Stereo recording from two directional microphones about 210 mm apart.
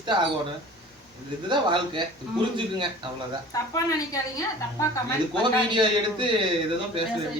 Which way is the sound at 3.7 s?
15° left (ahead or behind).